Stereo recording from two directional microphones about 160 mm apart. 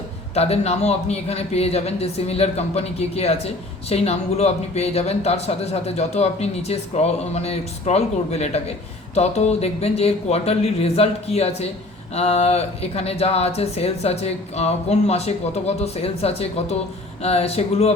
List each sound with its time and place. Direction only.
0.3 s speech: 40° left (ahead or behind)